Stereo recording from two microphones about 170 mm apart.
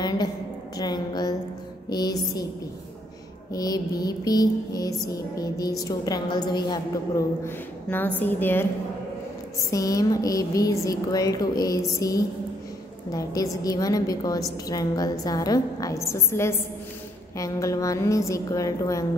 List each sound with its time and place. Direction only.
0.0 s a sound: 25° left (ahead or behind)
1.9 s music: 25° left (ahead or behind)
3.5 s a woman's voice: 20° left (ahead or behind)
7.4 s a woman's voice: 10° left (ahead or behind)
9.7 s a woman's voice: 20° left (ahead or behind)